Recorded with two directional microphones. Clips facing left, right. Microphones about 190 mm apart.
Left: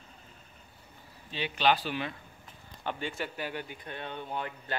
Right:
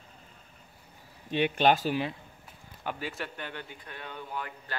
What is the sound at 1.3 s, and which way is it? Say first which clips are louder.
Speech: right 4 dB; 55° right (ahead or behind).